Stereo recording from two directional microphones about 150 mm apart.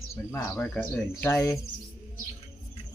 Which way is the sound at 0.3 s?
10° left (ahead or behind).